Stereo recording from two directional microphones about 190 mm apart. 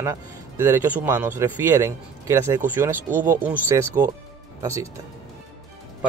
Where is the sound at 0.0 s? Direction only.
15° right (ahead or behind).